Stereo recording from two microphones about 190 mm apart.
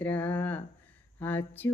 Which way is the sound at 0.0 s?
10° left (ahead or behind).